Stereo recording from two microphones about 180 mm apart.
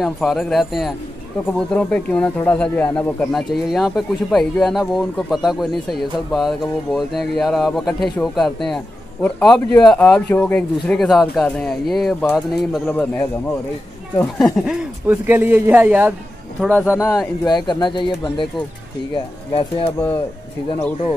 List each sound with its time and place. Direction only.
0.0 s speech: centre (ahead or behind)
17.5 s speech: 25° left (ahead or behind)